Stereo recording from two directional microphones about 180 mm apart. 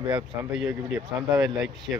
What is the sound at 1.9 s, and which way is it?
Speech, 5° right (ahead or behind).